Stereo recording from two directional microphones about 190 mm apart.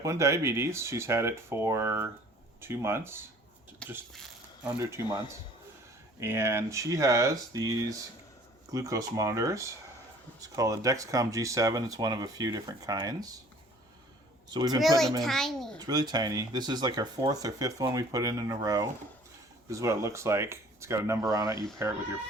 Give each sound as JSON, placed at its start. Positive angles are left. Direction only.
{"t": 0.0, "sound": "speech", "side_deg": -15}
{"t": 4.1, "sound": "a sound", "side_deg": 0}
{"t": 4.8, "sound": "speech", "side_deg": -15}
{"t": 14.5, "sound": "speech", "side_deg": -20}
{"t": 14.8, "sound": "a child's voice", "side_deg": 0}
{"t": 15.8, "sound": "speech", "side_deg": -20}